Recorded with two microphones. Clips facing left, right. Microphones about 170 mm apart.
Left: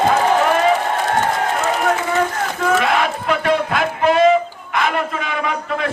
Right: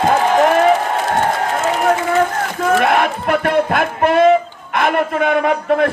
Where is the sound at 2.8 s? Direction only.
55° right (ahead or behind).